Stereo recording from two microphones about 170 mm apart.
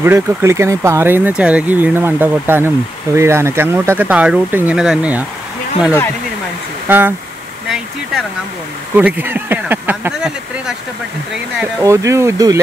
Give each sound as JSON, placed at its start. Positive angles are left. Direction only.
{"t": 0.0, "sound": "speech", "side_deg": -15}
{"t": 6.9, "sound": "speech", "side_deg": -10}
{"t": 7.7, "sound": "speech", "side_deg": 0}
{"t": 11.8, "sound": "speech", "side_deg": -20}